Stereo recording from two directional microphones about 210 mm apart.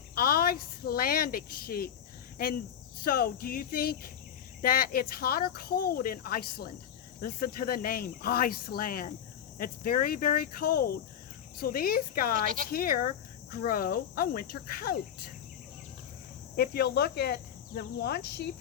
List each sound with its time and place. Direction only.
0.1 s speech: 45° left (ahead or behind)
3.0 s speech: 45° left (ahead or behind)
16.6 s speech: 50° left (ahead or behind)